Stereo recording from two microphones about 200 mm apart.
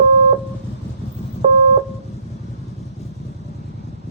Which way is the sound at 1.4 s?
30° right (ahead or behind).